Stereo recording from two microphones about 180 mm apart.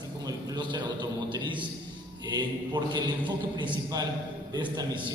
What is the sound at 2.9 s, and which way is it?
A man's voice, 25° right (ahead or behind).